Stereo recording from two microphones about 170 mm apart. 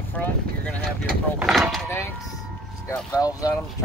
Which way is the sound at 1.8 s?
15° left (ahead or behind).